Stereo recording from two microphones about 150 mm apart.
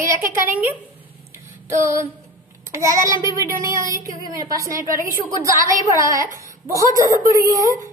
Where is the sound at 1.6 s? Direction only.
20° right (ahead or behind).